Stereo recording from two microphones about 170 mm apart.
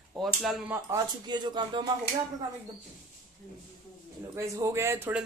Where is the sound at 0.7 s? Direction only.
20° right (ahead or behind).